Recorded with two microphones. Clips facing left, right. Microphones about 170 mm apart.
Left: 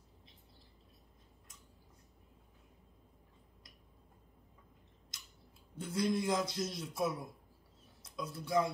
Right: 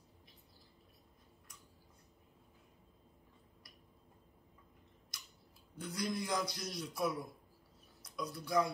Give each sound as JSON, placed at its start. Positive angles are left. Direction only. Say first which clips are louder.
{"t": 5.1, "sound": "tick-tock", "louder": "right 2 dB", "side_deg": 25}
{"t": 5.8, "sound": "a man's voice", "louder": "left 5 dB", "side_deg": 25}